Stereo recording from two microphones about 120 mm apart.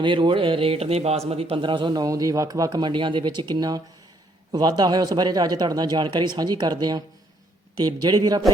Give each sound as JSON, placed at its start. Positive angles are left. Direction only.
{"t": 0.0, "sound": "a man's voice", "side_deg": -45}